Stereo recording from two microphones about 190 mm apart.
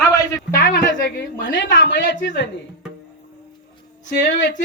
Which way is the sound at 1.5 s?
65° left (ahead or behind).